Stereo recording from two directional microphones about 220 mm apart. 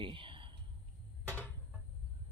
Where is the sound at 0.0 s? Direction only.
25° right (ahead or behind).